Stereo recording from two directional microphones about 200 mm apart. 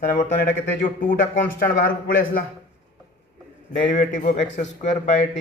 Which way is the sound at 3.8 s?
40° left (ahead or behind).